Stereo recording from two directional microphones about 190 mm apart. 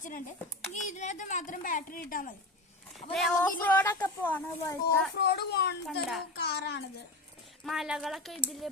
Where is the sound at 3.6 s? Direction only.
10° left (ahead or behind).